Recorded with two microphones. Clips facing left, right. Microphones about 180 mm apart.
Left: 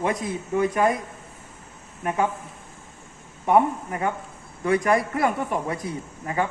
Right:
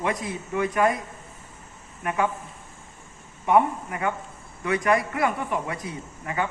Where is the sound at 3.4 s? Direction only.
35° left (ahead or behind).